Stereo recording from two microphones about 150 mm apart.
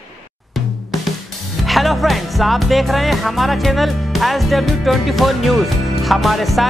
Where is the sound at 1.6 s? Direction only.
Centre (ahead or behind).